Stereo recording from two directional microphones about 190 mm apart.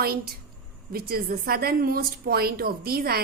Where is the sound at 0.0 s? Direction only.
55° right (ahead or behind).